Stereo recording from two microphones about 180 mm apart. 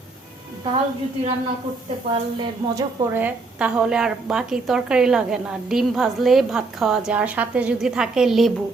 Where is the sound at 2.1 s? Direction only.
25° right (ahead or behind).